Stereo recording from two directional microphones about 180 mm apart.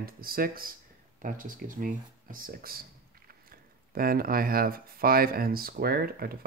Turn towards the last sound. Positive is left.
turn(degrees=-55)  # may be behind; listen again after turning